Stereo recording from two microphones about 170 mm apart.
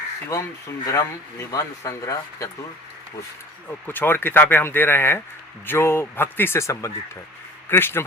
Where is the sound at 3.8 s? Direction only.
10° left (ahead or behind).